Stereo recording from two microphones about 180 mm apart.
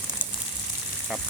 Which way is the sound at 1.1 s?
5° right (ahead or behind).